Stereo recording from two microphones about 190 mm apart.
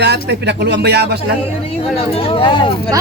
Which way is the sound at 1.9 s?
30° left (ahead or behind).